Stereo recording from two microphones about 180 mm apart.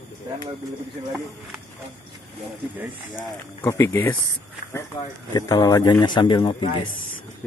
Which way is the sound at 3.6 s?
15° left (ahead or behind).